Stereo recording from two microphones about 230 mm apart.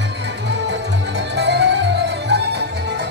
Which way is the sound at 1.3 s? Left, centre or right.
Right.